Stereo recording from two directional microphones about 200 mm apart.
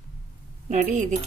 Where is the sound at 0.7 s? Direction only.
35° right (ahead or behind).